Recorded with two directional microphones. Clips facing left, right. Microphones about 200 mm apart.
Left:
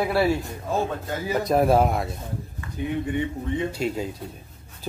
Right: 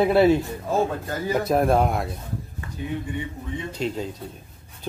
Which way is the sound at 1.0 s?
Centre (ahead or behind).